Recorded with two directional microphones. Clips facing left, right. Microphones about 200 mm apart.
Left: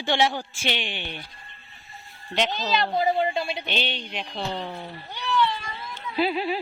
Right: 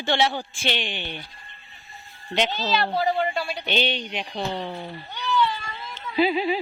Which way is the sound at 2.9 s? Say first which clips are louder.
Left 1 dB; 20° left (ahead or behind).